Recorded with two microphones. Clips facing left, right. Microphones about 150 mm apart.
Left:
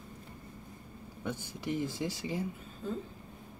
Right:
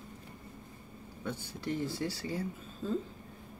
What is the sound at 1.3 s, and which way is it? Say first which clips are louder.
Speech: even; 15° left (ahead or behind).